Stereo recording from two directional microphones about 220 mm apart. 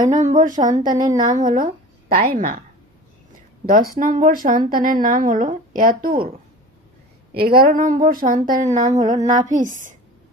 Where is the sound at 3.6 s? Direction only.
40° right (ahead or behind).